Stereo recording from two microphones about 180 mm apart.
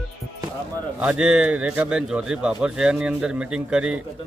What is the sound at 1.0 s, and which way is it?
A man's voice, 5° right (ahead or behind).